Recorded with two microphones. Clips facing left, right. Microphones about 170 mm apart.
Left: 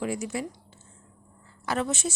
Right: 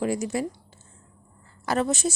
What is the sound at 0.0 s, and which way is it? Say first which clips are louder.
Speech: right 4 dB; 40° right (ahead or behind).